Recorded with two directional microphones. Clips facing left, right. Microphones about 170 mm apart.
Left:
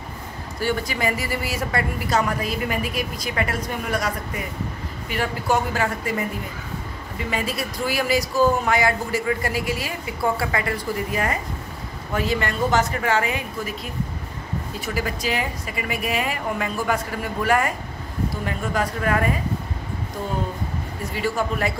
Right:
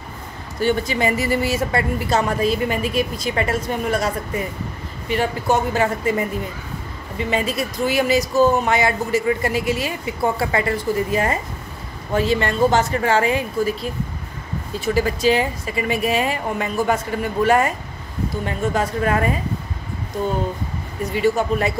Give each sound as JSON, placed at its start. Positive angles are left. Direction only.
{"t": 0.6, "sound": "a woman's voice", "side_deg": -25}
{"t": 7.2, "sound": "a woman's voice", "side_deg": -20}
{"t": 15.0, "sound": "a woman's voice", "side_deg": -30}
{"t": 21.1, "sound": "a woman's voice", "side_deg": -20}